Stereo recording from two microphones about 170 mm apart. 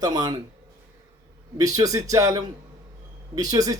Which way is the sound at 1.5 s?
20° right (ahead or behind).